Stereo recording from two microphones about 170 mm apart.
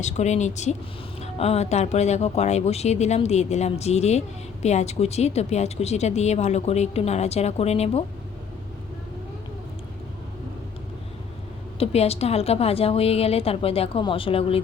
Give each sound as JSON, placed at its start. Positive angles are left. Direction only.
{"t": 0.0, "sound": "a woman's voice", "side_deg": 40}
{"t": 11.8, "sound": "a woman's voice", "side_deg": 35}